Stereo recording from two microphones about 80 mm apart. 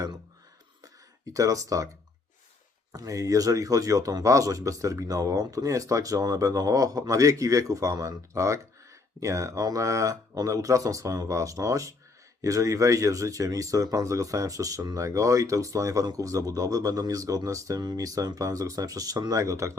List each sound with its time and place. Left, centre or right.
1.3 s speech: right
2.9 s speech: right
19.4 s speech: right